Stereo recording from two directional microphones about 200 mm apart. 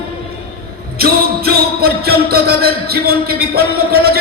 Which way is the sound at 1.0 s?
50° right (ahead or behind).